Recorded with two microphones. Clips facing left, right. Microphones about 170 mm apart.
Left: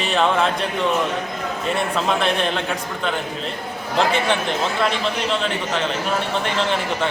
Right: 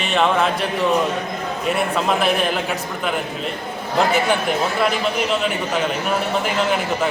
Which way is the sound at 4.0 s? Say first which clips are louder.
Right 1 dB; 5° right (ahead or behind).